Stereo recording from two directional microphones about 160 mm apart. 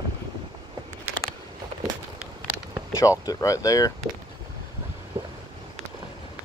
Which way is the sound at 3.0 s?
20° left (ahead or behind).